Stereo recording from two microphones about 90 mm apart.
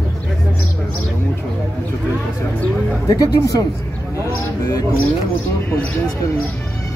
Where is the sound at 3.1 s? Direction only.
40° left (ahead or behind).